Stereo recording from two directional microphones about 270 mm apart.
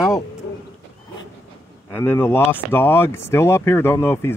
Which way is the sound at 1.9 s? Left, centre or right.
Centre.